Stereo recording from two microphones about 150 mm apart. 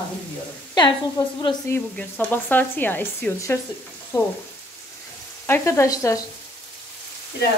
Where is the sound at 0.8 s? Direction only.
30° left (ahead or behind).